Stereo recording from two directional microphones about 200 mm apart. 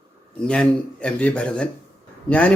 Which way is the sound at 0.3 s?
5° left (ahead or behind).